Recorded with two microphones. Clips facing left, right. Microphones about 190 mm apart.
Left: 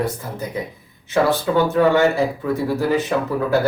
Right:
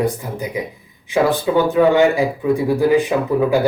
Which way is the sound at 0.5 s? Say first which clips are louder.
Right 2 dB; 15° right (ahead or behind).